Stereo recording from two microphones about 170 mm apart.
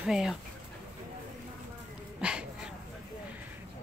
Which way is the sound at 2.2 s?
5° right (ahead or behind).